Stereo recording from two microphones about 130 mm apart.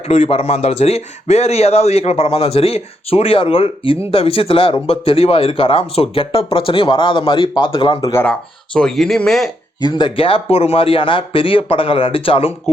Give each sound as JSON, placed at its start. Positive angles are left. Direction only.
{"t": 0.1, "sound": "speech", "side_deg": 55}
{"t": 8.1, "sound": "speech", "side_deg": 10}
{"t": 9.8, "sound": "speech", "side_deg": 35}
{"t": 12.7, "sound": "speech", "side_deg": 55}